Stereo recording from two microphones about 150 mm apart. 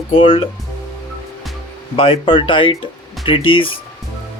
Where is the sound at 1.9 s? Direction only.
40° left (ahead or behind).